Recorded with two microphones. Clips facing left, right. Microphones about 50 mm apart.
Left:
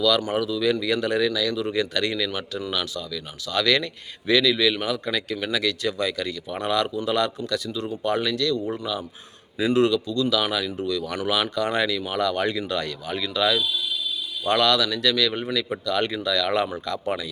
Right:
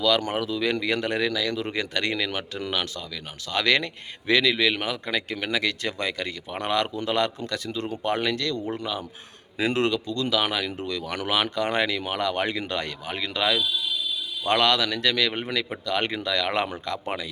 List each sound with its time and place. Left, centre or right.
0.3 s speech: right
2.6 s speech: right
3.5 s speech: right